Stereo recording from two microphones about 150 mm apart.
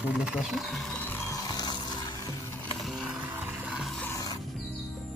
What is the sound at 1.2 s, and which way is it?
Music, 20° left (ahead or behind).